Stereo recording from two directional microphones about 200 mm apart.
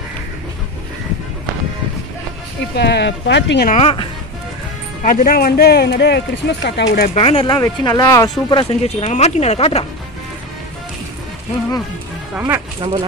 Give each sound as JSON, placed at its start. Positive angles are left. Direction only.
{"t": 2.7, "sound": "speech", "side_deg": 55}
{"t": 3.6, "sound": "speech", "side_deg": 35}
{"t": 5.0, "sound": "speech", "side_deg": 45}
{"t": 7.2, "sound": "speech", "side_deg": 30}
{"t": 7.4, "sound": "speech", "side_deg": 15}
{"t": 12.4, "sound": "speech", "side_deg": -10}